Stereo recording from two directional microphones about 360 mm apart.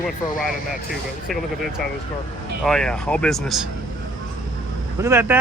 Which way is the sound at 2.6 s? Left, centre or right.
Centre.